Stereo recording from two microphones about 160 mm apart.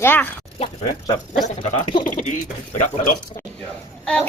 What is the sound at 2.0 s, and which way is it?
Speech, 55° left (ahead or behind).